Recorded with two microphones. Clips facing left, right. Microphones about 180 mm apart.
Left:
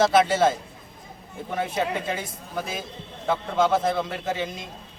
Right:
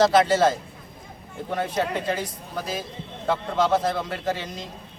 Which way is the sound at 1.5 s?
5° left (ahead or behind).